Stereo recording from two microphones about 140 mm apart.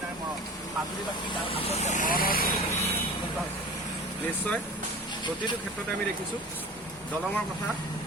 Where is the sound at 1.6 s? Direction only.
50° left (ahead or behind); by 2.5 s 90° left.